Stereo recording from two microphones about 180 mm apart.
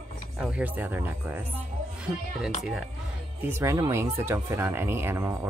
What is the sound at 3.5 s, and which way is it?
Speech, 15° right (ahead or behind).